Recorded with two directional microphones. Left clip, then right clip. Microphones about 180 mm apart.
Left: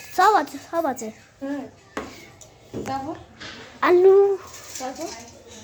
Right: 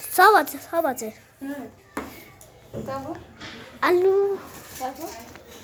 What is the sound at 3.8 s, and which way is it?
Speech, 10° left (ahead or behind).